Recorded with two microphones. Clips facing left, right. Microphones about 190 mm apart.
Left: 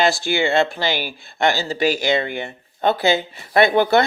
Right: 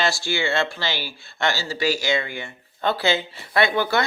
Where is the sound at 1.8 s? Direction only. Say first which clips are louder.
Left 4 dB; 55° left (ahead or behind).